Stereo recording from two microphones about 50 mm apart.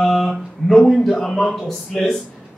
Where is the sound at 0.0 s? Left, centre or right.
Centre.